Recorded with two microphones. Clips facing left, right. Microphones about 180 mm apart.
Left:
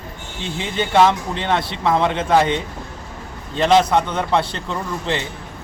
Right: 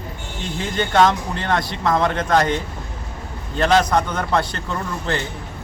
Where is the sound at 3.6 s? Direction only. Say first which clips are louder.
Left 2 dB; 20° left (ahead or behind).